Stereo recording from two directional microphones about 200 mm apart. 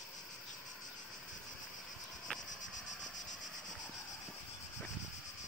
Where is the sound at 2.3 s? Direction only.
5° left (ahead or behind).